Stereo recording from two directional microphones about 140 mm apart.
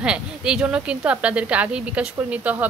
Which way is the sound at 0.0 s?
5° right (ahead or behind).